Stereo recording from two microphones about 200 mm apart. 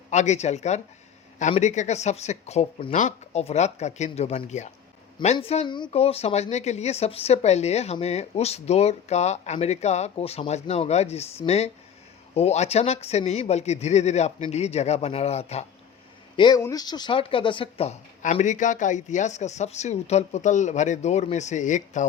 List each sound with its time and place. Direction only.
0.1 s speech: 35° left (ahead or behind)
16.4 s speech: 20° left (ahead or behind); by 22.0 s 35° left (ahead or behind)